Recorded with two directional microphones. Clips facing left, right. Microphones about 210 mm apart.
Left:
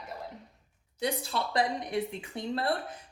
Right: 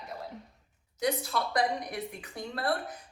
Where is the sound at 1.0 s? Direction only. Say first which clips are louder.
Right 1 dB; 30° left (ahead or behind).